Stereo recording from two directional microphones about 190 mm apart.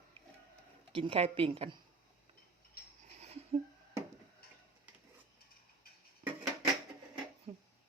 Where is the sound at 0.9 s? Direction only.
30° right (ahead or behind).